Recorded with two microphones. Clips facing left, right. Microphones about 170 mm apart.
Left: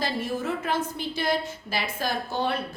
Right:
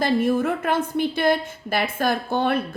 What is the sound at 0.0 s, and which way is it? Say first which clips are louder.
A woman's voice: right 8 dB; 55° right (ahead or behind).